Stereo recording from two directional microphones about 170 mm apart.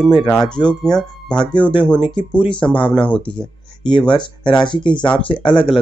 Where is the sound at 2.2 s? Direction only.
25° left (ahead or behind).